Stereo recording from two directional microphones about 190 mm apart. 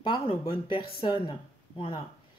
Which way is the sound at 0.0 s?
30° left (ahead or behind).